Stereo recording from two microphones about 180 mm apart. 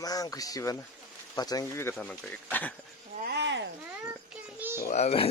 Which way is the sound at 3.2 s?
70° right (ahead or behind).